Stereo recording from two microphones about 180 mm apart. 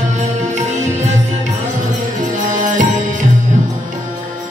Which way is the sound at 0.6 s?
40° right (ahead or behind).